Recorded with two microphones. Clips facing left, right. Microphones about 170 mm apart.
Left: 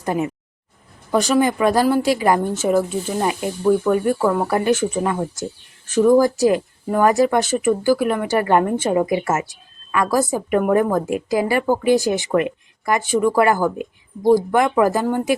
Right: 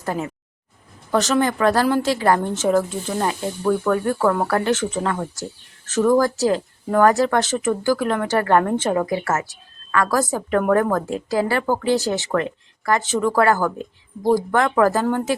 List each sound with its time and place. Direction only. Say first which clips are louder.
0.0 s a woman's voice: left 4 dB; 15° left (ahead or behind)